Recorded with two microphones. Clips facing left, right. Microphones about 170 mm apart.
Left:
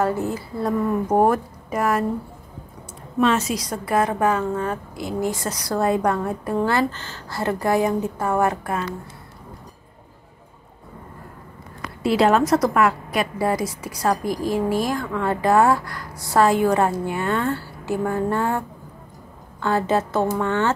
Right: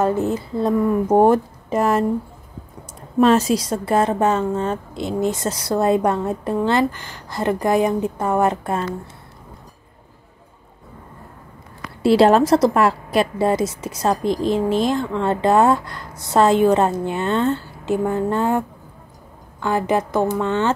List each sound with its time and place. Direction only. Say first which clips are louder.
0.0 s a woman's voice: right 3 dB; 20° right (ahead or behind)
3.2 s a woman's voice: right 5 dB; 35° right (ahead or behind)
12.0 s a woman's voice: right 4 dB; 30° right (ahead or behind)
19.6 s a woman's voice: right 1 dB; 15° right (ahead or behind)